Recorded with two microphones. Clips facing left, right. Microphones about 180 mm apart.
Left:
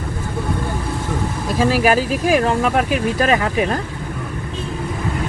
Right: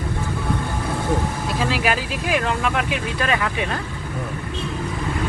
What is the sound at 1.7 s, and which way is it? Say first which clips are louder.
Speech: left 7 dB; 40° left (ahead or behind).